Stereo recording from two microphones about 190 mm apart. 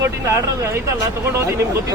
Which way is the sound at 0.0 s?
15° right (ahead or behind).